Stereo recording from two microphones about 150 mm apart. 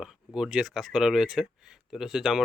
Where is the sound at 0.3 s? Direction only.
5° right (ahead or behind).